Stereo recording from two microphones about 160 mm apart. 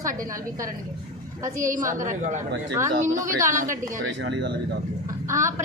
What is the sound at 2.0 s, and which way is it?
A woman's voice, 50° right (ahead or behind).